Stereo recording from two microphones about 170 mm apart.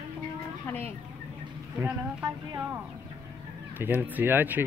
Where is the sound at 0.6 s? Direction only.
10° left (ahead or behind).